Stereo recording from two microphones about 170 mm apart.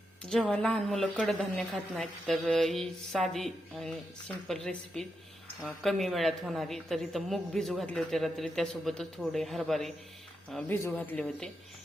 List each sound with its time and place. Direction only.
0.3 s speech: 5° left (ahead or behind)
10.7 s speech: 10° left (ahead or behind)